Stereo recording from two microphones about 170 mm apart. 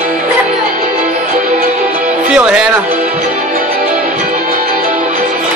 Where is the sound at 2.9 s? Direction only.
55° right (ahead or behind).